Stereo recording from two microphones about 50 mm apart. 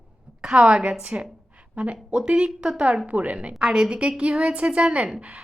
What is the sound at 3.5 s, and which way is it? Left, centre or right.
A woman's voice, centre.